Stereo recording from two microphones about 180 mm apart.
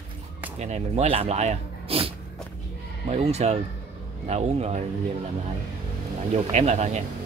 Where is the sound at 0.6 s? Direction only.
40° right (ahead or behind).